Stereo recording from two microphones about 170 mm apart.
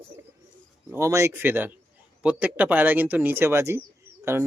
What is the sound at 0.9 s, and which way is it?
Speech, 15° right (ahead or behind).